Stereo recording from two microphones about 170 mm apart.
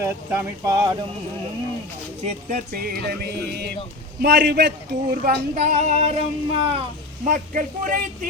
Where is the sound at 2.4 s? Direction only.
55° right (ahead or behind); by 5.3 s 70° right (ahead or behind).